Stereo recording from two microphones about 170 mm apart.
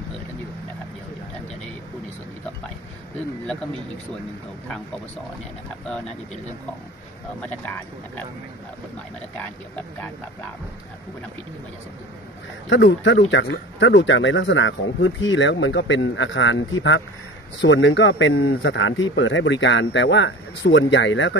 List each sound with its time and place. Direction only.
7.4 s speech: 10° left (ahead or behind)
12.6 s speech: 90° left